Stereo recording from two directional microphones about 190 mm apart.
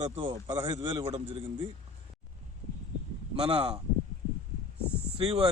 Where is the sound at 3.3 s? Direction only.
30° right (ahead or behind).